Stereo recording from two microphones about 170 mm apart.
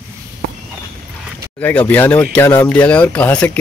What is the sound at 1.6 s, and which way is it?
Speech, 10° left (ahead or behind).